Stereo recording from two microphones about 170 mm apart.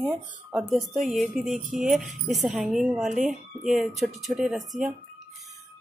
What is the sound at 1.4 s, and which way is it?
Speech, 50° right (ahead or behind).